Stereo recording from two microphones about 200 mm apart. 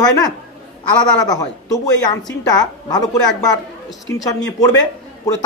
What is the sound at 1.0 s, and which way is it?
A woman's voice, 20° left (ahead or behind).